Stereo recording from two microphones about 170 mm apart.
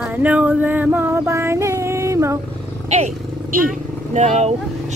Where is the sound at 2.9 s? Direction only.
45° right (ahead or behind).